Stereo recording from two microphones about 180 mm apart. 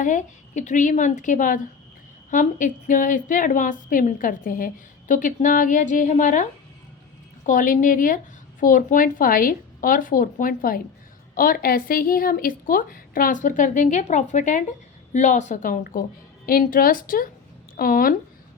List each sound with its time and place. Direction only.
0.0 s a woman's voice: 45° left (ahead or behind)